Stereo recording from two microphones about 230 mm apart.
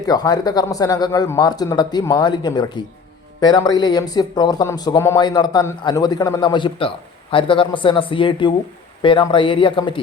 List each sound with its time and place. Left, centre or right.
0.0 s speech: centre